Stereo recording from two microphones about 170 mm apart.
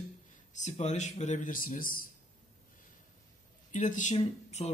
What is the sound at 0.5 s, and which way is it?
Speech, 45° left (ahead or behind).